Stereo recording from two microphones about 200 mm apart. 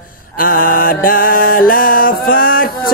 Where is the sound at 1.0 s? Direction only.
45° left (ahead or behind).